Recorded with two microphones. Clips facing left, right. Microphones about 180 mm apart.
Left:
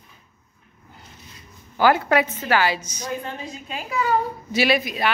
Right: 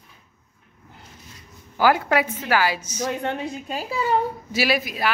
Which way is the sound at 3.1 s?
70° right (ahead or behind).